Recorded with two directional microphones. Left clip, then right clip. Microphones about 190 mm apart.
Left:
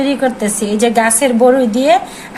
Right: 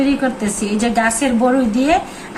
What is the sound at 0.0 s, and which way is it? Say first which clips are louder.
A woman's voice: left 3 dB; 35° left (ahead or behind).